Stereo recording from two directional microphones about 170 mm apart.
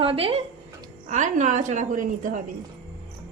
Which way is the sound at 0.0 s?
30° right (ahead or behind).